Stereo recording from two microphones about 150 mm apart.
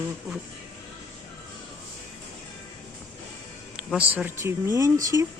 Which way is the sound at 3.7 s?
10° right (ahead or behind).